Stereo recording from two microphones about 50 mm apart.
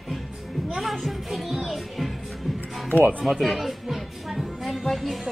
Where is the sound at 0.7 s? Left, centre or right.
Centre.